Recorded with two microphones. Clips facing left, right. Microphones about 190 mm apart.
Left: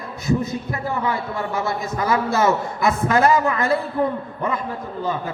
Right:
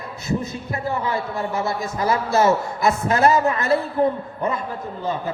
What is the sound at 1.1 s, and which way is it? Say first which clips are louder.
A man's voice: even; 30° right (ahead or behind).